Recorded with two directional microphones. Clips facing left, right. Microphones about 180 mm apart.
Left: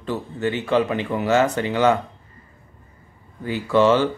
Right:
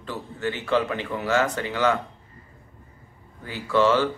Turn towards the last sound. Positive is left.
turn(degrees=20)  # may be behind; listen again after turning